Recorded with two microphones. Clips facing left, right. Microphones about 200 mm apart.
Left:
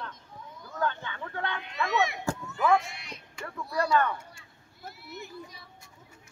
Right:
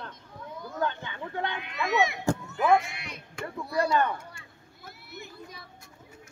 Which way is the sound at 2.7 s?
60° right (ahead or behind).